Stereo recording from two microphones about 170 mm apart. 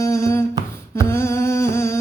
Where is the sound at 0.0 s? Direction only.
15° left (ahead or behind).